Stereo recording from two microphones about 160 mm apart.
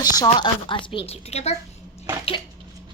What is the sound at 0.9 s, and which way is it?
Speech, 35° left (ahead or behind).